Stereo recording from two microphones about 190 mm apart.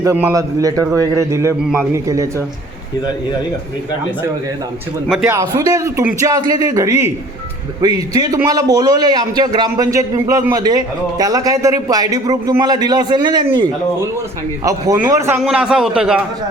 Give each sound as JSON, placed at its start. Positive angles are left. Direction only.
{"t": 0.0, "sound": "a man's voice", "side_deg": -15}
{"t": 5.0, "sound": "a man's voice", "side_deg": 0}
{"t": 5.3, "sound": "a man's voice", "side_deg": -15}